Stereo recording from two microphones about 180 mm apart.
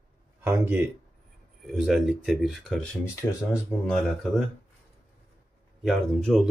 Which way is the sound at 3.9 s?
5° left (ahead or behind).